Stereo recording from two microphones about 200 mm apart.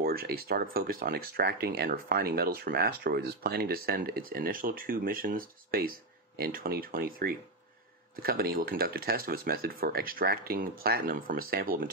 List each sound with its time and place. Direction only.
0.0 s speech: 50° right (ahead or behind)